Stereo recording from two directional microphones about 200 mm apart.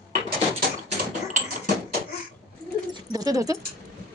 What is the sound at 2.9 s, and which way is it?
Speech, 20° right (ahead or behind).